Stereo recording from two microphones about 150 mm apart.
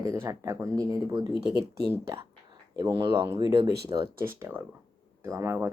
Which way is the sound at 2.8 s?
30° right (ahead or behind).